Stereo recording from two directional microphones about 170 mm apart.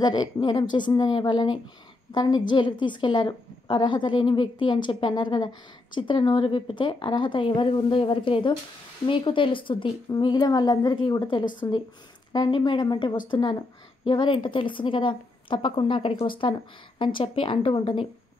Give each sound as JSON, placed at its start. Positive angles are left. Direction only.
{"t": 0.0, "sound": "a woman's voice", "side_deg": 25}